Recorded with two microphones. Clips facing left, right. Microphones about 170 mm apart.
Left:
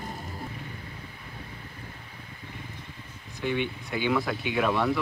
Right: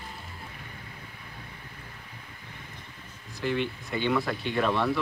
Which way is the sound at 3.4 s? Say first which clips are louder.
Even; centre (ahead or behind).